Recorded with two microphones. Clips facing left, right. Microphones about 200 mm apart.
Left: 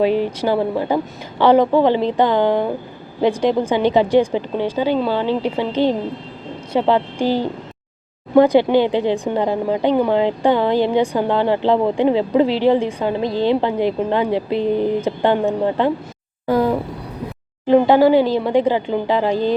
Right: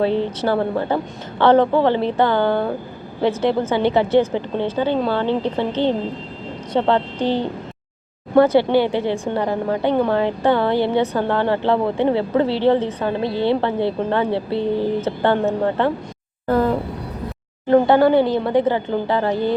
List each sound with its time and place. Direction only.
0.0 s speech: 15° left (ahead or behind)